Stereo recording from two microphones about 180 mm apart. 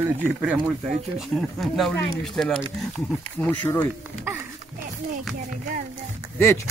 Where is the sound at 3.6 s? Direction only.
15° left (ahead or behind).